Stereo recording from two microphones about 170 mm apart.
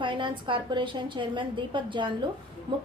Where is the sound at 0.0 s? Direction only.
30° right (ahead or behind).